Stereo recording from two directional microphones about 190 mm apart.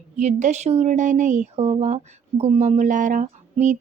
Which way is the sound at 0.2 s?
40° right (ahead or behind).